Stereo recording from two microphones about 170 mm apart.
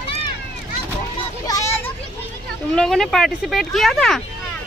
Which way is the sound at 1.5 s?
15° left (ahead or behind).